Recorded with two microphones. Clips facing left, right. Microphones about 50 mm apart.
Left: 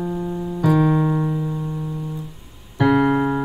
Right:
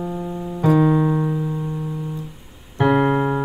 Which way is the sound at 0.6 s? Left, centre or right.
Right.